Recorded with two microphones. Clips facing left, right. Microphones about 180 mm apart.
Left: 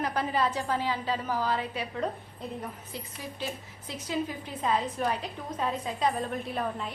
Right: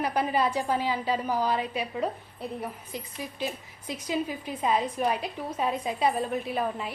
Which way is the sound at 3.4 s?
15° right (ahead or behind).